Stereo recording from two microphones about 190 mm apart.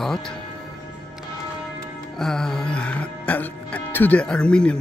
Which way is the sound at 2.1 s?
5° left (ahead or behind).